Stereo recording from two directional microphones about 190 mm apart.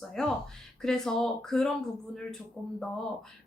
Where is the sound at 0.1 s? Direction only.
5° left (ahead or behind).